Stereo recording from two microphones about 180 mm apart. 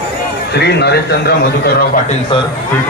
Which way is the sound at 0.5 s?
65° left (ahead or behind).